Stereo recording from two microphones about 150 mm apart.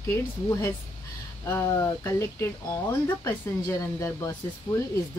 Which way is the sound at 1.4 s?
15° left (ahead or behind).